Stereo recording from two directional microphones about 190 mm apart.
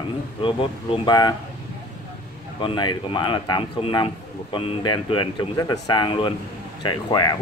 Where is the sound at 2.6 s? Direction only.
25° left (ahead or behind).